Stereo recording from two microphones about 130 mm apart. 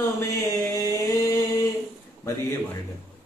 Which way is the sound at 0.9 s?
25° left (ahead or behind).